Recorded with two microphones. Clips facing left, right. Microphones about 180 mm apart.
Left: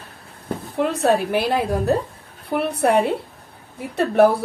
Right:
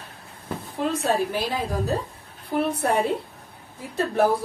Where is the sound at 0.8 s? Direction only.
65° left (ahead or behind).